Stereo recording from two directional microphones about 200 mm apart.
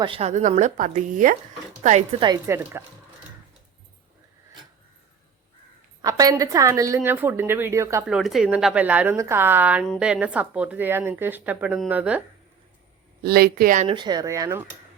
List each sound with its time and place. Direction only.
0.0 s a woman's voice: 30° right (ahead or behind)
2.2 s speech: 15° right (ahead or behind)
6.0 s speech: 20° right (ahead or behind)
8.0 s speech: centre (ahead or behind)
13.2 s speech: 50° right (ahead or behind)
13.8 s speech: 25° right (ahead or behind)